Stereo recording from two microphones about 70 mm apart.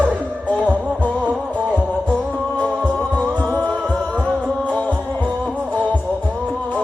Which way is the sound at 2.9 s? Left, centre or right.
Centre.